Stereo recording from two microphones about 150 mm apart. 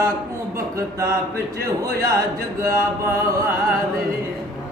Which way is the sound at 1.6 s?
90° right.